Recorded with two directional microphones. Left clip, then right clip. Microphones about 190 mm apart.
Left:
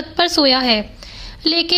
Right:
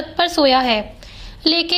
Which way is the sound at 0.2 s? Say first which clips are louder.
Even; 35° left (ahead or behind).